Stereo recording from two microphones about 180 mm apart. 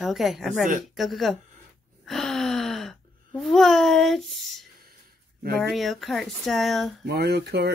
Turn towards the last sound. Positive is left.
turn(degrees=-65)  # may be behind; listen again after turning